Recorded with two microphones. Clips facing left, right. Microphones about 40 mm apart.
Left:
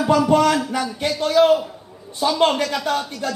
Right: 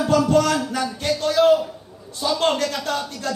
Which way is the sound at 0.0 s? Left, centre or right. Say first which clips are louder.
Left 2 dB; centre.